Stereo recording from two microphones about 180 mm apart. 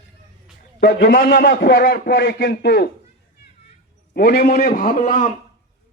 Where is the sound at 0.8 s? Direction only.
70° left (ahead or behind).